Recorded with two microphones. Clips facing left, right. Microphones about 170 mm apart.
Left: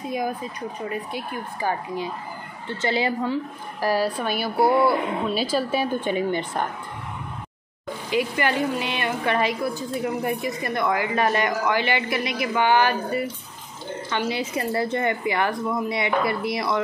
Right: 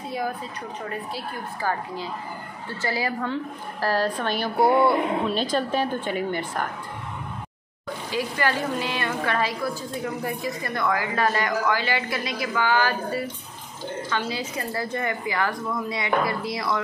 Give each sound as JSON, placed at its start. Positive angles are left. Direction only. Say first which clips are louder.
{"t": 0.1, "sound": "a woman's voice", "louder": "left 2 dB", "side_deg": 15}
{"t": 3.8, "sound": "a woman's voice", "louder": "left 1 dB", "side_deg": 10}
{"t": 8.1, "sound": "a woman's voice", "louder": "left 3 dB", "side_deg": 15}
{"t": 10.6, "sound": "a woman's voice", "louder": "left 1 dB", "side_deg": 20}
{"t": 14.1, "sound": "a woman's voice", "louder": "left 5 dB", "side_deg": 25}